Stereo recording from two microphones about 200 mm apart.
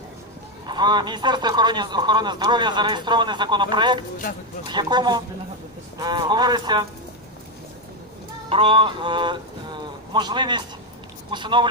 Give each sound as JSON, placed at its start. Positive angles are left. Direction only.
{"t": 0.7, "sound": "speech", "side_deg": -20}
{"t": 4.3, "sound": "speech", "side_deg": 45}
{"t": 4.6, "sound": "speech", "side_deg": -20}
{"t": 8.4, "sound": "speech", "side_deg": -25}